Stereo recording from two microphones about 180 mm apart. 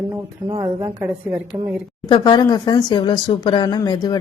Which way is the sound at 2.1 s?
25° left (ahead or behind).